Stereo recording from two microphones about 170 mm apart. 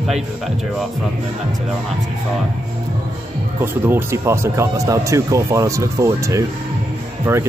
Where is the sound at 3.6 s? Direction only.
15° right (ahead or behind).